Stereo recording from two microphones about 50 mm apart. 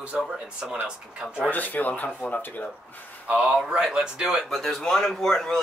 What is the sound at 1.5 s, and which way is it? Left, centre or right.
Speech, left.